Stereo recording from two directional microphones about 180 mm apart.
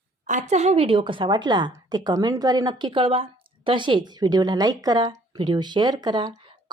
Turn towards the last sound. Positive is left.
turn(degrees=-25)  # may be behind; listen again after turning